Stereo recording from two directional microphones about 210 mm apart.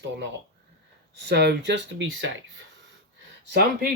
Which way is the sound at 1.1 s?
55° right (ahead or behind).